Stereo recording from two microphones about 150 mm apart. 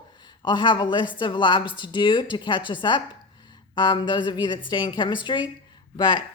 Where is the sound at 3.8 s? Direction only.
30° left (ahead or behind).